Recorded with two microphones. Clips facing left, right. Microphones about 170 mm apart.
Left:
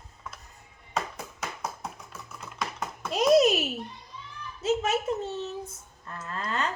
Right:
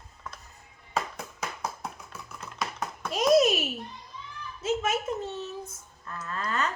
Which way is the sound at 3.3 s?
35° left (ahead or behind).